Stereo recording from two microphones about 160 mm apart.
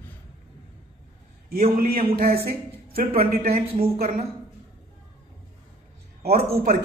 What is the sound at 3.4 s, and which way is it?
Speech, 40° right (ahead or behind).